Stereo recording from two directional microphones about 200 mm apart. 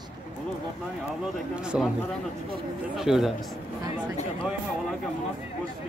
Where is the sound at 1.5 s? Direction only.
5° right (ahead or behind).